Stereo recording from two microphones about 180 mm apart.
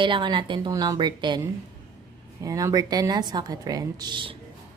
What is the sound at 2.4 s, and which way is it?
A woman's voice, 20° right (ahead or behind).